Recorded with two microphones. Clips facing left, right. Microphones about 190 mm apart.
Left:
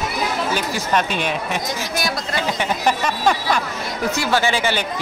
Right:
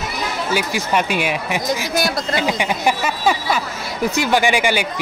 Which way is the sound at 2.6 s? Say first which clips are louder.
Right 1 dB; 10° right (ahead or behind).